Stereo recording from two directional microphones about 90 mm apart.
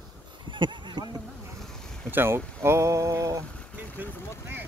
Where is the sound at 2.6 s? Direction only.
30° right (ahead or behind).